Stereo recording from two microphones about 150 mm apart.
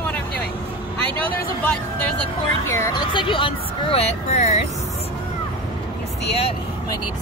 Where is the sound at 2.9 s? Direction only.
30° left (ahead or behind).